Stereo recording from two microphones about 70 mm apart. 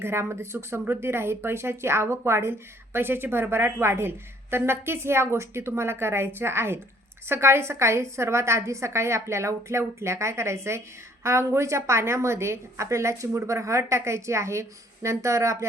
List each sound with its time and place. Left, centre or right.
0.0 s a woman's voice: right